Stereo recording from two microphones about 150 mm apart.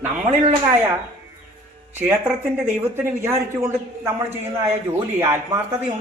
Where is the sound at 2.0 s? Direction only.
15° right (ahead or behind).